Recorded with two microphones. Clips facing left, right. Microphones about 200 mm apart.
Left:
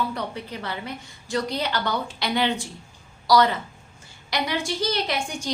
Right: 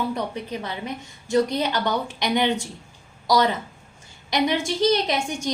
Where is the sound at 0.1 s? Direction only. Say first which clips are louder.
Right 3 dB; 15° right (ahead or behind).